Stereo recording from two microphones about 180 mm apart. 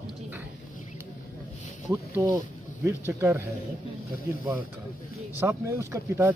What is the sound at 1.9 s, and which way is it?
Speech, 20° right (ahead or behind).